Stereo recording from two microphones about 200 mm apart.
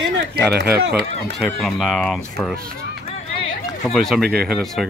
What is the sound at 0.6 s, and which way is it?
Speech, 60° right (ahead or behind).